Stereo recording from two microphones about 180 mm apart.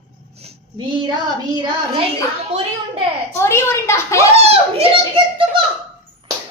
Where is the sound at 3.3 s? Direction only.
15° left (ahead or behind).